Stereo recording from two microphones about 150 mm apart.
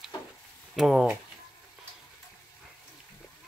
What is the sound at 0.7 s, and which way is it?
Speech, 5° right (ahead or behind).